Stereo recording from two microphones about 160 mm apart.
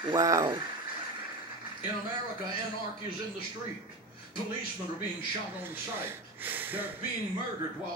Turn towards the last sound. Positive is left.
turn(degrees=-10)  # may be behind; listen again after turning